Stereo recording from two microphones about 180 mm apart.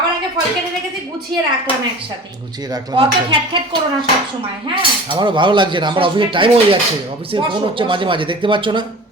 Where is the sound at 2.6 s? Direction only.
25° right (ahead or behind).